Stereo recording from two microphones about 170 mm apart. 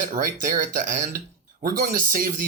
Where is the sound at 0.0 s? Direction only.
50° right (ahead or behind).